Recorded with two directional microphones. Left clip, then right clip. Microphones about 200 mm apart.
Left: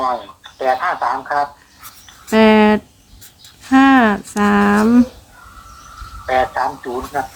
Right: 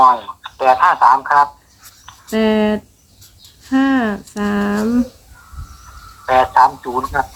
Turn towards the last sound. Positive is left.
turn(degrees=-45)  # may be behind; listen again after turning